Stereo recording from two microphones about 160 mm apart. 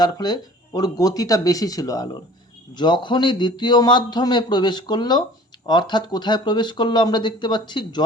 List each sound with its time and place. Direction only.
0.0 s a man's voice: 25° left (ahead or behind)